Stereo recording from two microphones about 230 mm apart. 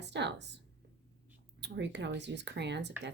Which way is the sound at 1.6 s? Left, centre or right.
Right.